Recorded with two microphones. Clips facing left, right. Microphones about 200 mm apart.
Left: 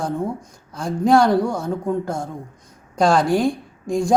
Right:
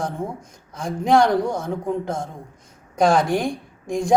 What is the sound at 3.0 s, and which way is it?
Speech, centre (ahead or behind).